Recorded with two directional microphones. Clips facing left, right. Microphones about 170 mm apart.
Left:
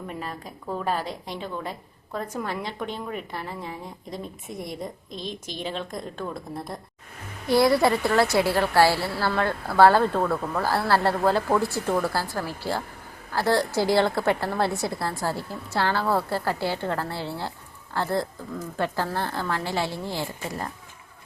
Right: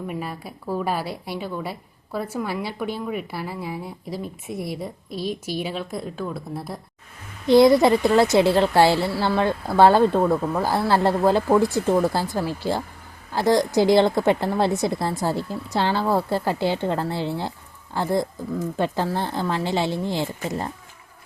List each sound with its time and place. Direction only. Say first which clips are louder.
0.1 s a woman's voice: right 4 dB; 10° right (ahead or behind)
7.4 s a woman's voice: right 5 dB; 20° right (ahead or behind)